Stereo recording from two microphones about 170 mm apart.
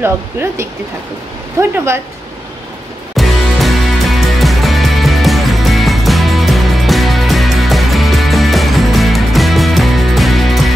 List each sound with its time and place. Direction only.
0.0 s speech: 15° right (ahead or behind)
3.2 s music: centre (ahead or behind)